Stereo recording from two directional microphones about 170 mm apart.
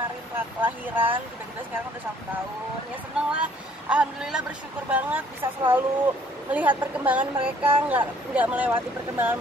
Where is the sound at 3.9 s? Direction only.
5° right (ahead or behind).